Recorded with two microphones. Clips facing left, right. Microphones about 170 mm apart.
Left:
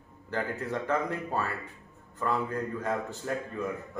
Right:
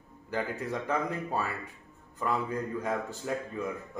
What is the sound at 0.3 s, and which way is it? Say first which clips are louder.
Speech: left 1 dB; 10° right (ahead or behind).